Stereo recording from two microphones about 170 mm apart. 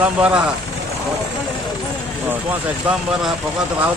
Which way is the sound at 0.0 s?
5° right (ahead or behind).